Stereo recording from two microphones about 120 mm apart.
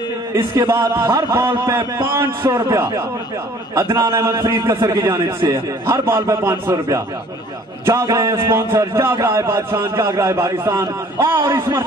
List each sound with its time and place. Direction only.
0.7 s a man's voice: 20° right (ahead or behind)
4.7 s a man's voice: 40° right (ahead or behind)
5.9 s a man's voice: 25° right (ahead or behind)